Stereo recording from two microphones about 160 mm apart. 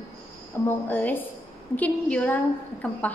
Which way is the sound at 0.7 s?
10° left (ahead or behind).